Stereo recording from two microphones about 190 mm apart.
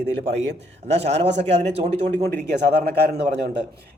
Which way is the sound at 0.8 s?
35° right (ahead or behind).